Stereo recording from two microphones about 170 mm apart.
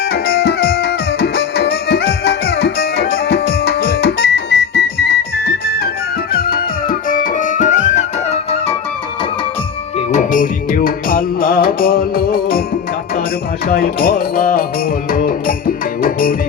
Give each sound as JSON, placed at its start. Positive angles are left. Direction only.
{"t": 0.0, "sound": "music", "side_deg": 65}
{"t": 10.1, "sound": "music", "side_deg": 50}
{"t": 13.7, "sound": "music", "side_deg": 60}